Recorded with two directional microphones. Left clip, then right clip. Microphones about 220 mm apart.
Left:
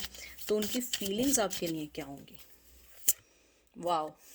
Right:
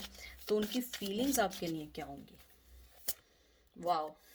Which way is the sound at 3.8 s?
40° left (ahead or behind).